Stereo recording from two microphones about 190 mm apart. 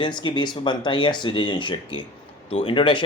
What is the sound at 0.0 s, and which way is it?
Speech, 25° left (ahead or behind).